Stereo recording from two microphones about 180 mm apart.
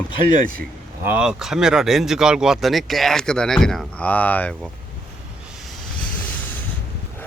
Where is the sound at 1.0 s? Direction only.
5° right (ahead or behind).